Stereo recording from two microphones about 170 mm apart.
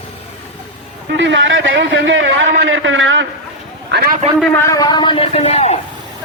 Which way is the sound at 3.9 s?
90° right.